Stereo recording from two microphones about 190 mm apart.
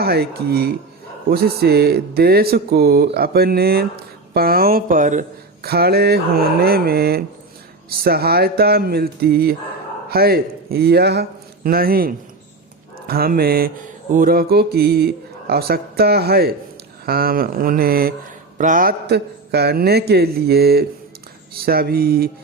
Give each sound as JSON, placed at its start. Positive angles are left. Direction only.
{"t": 0.0, "sound": "speech", "side_deg": -55}
{"t": 5.6, "sound": "speech", "side_deg": -55}